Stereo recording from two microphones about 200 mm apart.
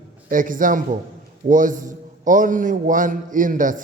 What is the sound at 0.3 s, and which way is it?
A man's voice, 40° right (ahead or behind).